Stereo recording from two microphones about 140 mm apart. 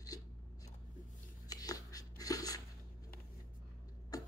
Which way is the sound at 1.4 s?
25° left (ahead or behind).